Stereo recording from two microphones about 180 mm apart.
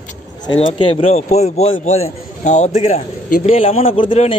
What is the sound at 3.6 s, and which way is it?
Speech, 30° left (ahead or behind).